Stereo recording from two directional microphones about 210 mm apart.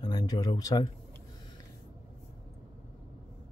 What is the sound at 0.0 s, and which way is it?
Speech, 20° left (ahead or behind).